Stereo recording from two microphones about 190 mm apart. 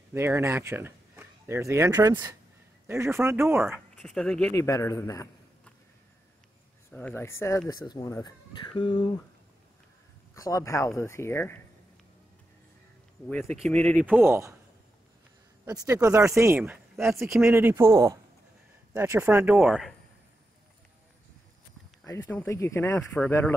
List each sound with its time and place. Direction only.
0.1 s speech: 15° right (ahead or behind); by 4.6 s 5° left (ahead or behind)
4.6 s speech: 15° left (ahead or behind)
6.9 s speech: 10° left (ahead or behind); by 9.1 s 25° left (ahead or behind)
10.3 s speech: 15° left (ahead or behind)
13.3 s speech: 5° left (ahead or behind)
14.0 s speech: 10° right (ahead or behind)
15.6 s speech: 15° right (ahead or behind); by 19.9 s centre (ahead or behind)
22.0 s speech: 15° left (ahead or behind)